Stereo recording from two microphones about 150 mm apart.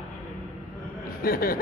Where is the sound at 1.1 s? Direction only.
80° left.